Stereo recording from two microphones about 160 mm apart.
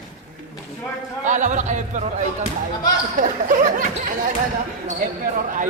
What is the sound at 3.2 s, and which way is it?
Speech, 55° right (ahead or behind).